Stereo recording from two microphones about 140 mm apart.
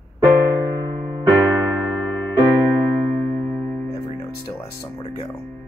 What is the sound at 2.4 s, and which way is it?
Music, 15° left (ahead or behind).